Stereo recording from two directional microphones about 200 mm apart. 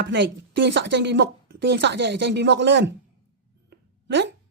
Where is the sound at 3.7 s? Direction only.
60° right (ahead or behind).